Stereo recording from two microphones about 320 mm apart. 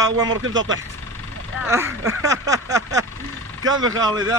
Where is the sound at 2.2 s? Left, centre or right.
Centre.